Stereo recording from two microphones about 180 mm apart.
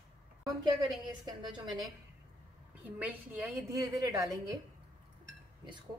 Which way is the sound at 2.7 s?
10° right (ahead or behind).